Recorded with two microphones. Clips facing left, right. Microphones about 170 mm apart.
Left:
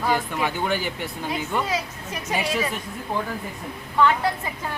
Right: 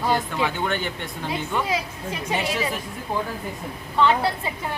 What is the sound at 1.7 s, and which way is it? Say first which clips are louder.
Speech: right 1 dB; 25° right (ahead or behind).